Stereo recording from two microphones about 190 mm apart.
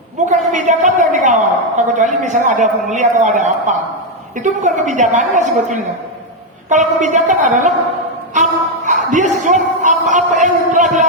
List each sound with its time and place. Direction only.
0.3 s a woman's voice: 40° right (ahead or behind)
8.3 s music: 40° right (ahead or behind)
9.0 s a woman's voice: 40° right (ahead or behind)